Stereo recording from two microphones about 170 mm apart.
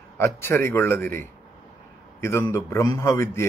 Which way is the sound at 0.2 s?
15° left (ahead or behind).